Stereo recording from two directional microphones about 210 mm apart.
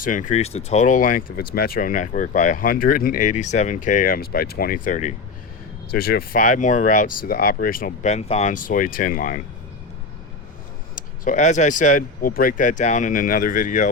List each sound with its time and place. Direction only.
0.0 s speech: 40° left (ahead or behind)
5.9 s speech: 45° left (ahead or behind)
10.9 s speech: 35° left (ahead or behind)